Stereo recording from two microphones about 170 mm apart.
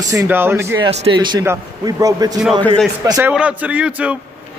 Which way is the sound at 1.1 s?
25° right (ahead or behind).